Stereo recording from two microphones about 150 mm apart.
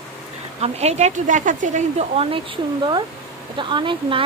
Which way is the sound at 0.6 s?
45° right (ahead or behind).